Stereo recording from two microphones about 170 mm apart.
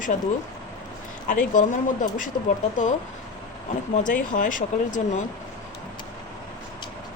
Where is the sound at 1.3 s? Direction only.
50° left (ahead or behind).